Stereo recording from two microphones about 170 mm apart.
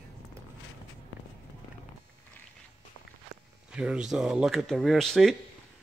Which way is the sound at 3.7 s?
5° right (ahead or behind).